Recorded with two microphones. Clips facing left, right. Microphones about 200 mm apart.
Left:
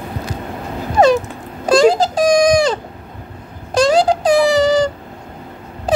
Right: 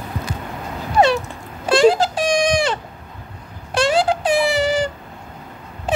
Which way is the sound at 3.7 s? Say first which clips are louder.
Left 5 dB; 40° left (ahead or behind).